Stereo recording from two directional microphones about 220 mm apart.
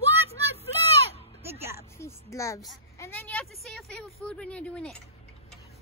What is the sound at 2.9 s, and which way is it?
Speech, 10° left (ahead or behind).